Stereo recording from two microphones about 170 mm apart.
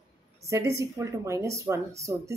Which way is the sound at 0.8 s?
15° right (ahead or behind).